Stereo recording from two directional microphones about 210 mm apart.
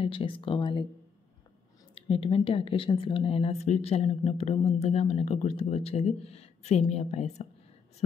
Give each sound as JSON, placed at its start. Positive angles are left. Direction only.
{"t": 0.0, "sound": "speech", "side_deg": 25}
{"t": 2.0, "sound": "speech", "side_deg": 25}